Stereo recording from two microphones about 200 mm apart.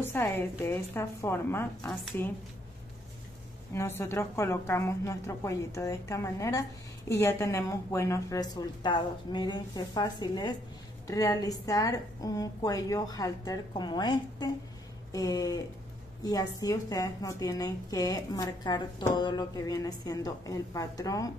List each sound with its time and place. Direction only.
0.0 s a woman's voice: 10° left (ahead or behind)
3.7 s a woman's voice: 15° left (ahead or behind)